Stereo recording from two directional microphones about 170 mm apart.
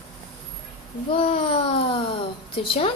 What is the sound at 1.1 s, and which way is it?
A woman's voice, 35° left (ahead or behind).